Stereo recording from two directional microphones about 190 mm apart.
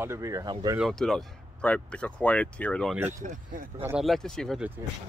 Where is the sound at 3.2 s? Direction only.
45° right (ahead or behind).